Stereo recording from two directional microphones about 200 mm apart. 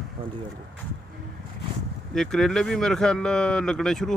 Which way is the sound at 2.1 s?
5° left (ahead or behind).